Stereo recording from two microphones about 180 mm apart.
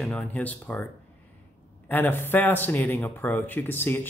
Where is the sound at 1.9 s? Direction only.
10° left (ahead or behind).